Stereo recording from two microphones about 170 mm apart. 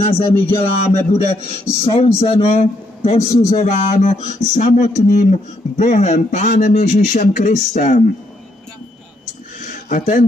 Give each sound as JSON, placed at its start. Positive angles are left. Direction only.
{"t": 0.0, "sound": "a man's voice", "side_deg": 35}
{"t": 9.8, "sound": "speech", "side_deg": 50}